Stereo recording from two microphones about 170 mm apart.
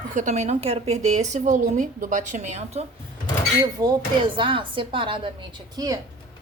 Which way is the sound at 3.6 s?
25° right (ahead or behind).